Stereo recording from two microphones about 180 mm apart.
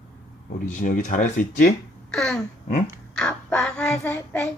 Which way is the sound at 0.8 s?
45° left (ahead or behind).